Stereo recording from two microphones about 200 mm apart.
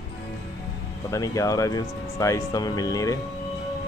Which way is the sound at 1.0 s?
15° left (ahead or behind).